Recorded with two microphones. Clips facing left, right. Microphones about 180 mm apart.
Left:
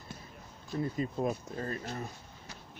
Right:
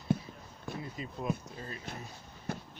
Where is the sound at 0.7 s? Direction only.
45° left (ahead or behind).